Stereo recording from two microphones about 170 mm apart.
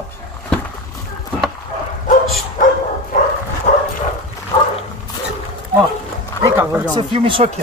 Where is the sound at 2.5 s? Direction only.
50° left (ahead or behind).